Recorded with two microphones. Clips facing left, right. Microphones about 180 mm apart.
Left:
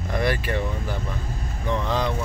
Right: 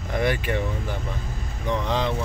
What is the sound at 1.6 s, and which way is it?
Speech, 20° right (ahead or behind).